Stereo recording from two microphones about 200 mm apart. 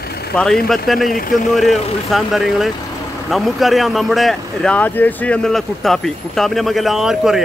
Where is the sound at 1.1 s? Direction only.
45° left (ahead or behind).